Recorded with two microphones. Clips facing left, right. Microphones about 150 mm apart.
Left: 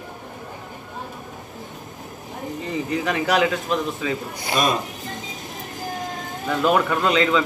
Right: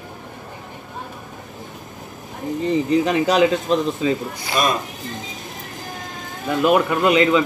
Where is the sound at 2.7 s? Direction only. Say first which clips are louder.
Right 6 dB; 25° right (ahead or behind).